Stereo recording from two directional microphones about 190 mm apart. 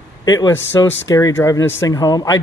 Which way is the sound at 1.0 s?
20° left (ahead or behind).